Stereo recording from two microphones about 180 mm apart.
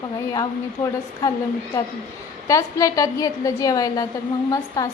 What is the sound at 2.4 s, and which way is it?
A woman's voice, 20° left (ahead or behind).